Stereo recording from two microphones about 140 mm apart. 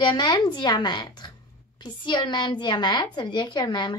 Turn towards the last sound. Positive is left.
turn(degrees=30)  # may be behind; listen again after turning